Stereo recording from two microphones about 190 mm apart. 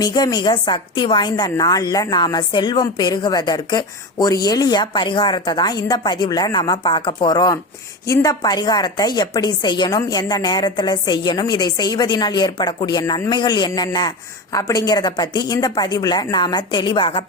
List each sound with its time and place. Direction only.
0.0 s a woman's voice: 20° left (ahead or behind)